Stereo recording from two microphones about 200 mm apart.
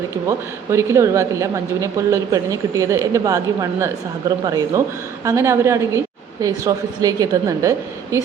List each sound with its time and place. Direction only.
0.3 s speech: 15° right (ahead or behind)